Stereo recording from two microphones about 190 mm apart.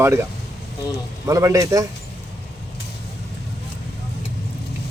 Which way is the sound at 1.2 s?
15° right (ahead or behind).